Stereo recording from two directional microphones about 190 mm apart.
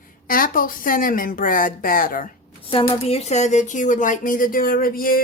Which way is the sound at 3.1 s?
35° left (ahead or behind).